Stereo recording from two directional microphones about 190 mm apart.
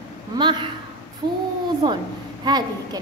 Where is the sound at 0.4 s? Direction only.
25° right (ahead or behind).